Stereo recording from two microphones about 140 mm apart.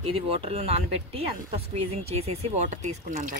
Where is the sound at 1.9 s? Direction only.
45° right (ahead or behind).